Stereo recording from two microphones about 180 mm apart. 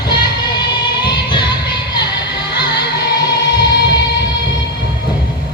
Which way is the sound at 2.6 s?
20° left (ahead or behind).